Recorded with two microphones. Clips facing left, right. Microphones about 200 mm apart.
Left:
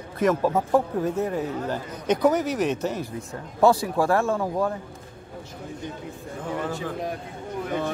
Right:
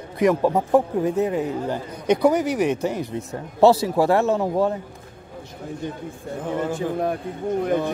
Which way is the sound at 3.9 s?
25° right (ahead or behind).